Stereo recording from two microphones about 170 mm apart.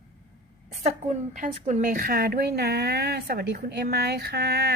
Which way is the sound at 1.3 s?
45° right (ahead or behind).